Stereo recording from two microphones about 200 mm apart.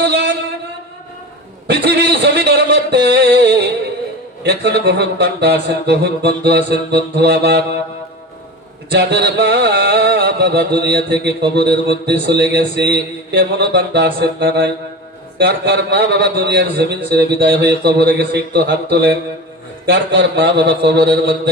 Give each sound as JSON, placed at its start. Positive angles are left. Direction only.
{"t": 1.6, "sound": "music", "side_deg": -55}
{"t": 7.2, "sound": "mantra", "side_deg": -55}
{"t": 8.9, "sound": "music", "side_deg": -55}